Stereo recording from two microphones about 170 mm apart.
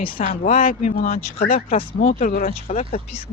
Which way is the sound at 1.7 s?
30° left (ahead or behind).